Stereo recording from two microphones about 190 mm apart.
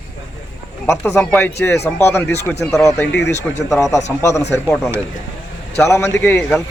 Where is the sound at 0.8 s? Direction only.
15° left (ahead or behind).